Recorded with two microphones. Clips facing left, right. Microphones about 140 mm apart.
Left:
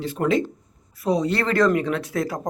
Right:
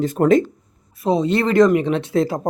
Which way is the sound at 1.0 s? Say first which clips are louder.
Right 4 dB; 25° right (ahead or behind).